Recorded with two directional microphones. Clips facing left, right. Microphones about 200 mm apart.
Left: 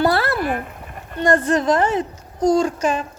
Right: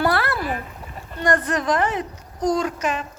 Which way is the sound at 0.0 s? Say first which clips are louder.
Left 3 dB; 25° left (ahead or behind).